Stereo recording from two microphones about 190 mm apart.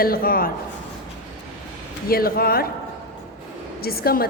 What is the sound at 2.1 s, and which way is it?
Speech, 50° left (ahead or behind).